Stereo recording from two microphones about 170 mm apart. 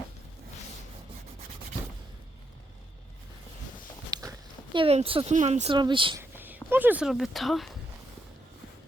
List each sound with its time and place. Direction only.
4.1 s a sound: 20° right (ahead or behind)
4.9 s speech: 35° right (ahead or behind)
5.7 s speech: 30° right (ahead or behind)
6.1 s speech: 10° right (ahead or behind)